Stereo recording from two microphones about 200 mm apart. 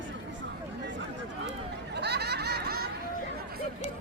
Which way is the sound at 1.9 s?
55° right (ahead or behind).